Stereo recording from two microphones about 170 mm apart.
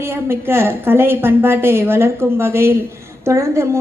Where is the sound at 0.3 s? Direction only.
15° right (ahead or behind).